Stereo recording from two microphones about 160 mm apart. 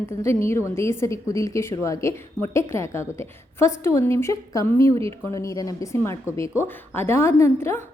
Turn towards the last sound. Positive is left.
turn(degrees=15)  # may be behind; listen again after turning